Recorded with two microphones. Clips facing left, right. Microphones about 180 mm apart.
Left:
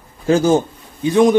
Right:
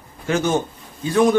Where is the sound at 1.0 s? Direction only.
20° left (ahead or behind).